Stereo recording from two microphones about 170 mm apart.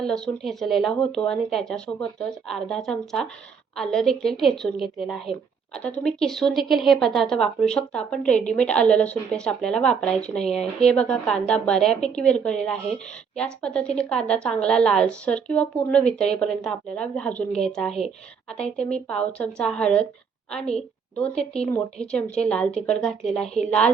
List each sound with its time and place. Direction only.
0.0 s a woman's voice: centre (ahead or behind)
19.0 s a woman's voice: 5° left (ahead or behind)